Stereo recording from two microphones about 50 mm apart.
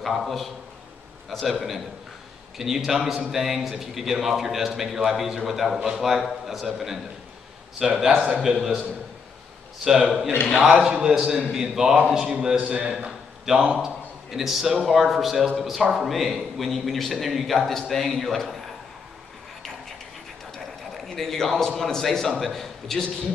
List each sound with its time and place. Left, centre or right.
0.0 s a man's voice: centre
10.0 s a man's voice: centre
10.8 s a man's voice: centre
13.0 s a sound: centre
13.7 s a man's voice: centre
20.5 s a man's voice: centre